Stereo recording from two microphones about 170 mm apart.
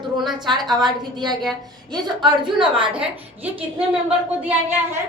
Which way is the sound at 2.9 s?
10° right (ahead or behind).